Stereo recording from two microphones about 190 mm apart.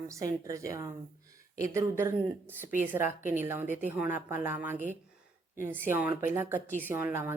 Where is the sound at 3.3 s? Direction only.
10° right (ahead or behind).